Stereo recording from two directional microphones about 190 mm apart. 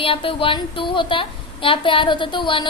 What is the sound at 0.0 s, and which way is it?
A woman's voice, 30° left (ahead or behind).